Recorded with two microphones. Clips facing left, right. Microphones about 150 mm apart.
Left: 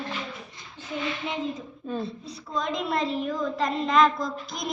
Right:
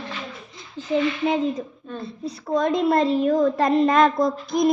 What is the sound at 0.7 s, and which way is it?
Speech, 90° right.